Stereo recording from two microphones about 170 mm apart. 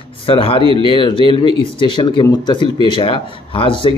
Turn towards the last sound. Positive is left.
turn(degrees=30)  # may be behind; listen again after turning